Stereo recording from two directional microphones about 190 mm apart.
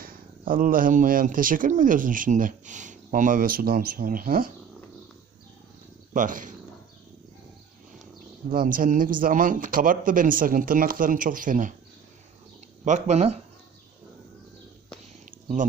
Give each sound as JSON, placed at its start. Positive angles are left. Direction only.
{"t": 0.0, "sound": "speech", "side_deg": -45}
{"t": 6.1, "sound": "speech", "side_deg": -45}
{"t": 8.4, "sound": "speech", "side_deg": -45}
{"t": 12.8, "sound": "speech", "side_deg": -35}